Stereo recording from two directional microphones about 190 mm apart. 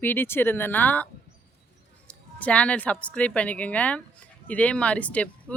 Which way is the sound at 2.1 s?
5° left (ahead or behind).